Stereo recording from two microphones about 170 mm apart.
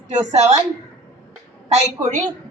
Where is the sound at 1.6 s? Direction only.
40° right (ahead or behind).